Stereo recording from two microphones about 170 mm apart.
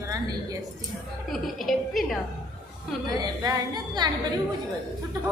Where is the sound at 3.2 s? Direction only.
25° right (ahead or behind).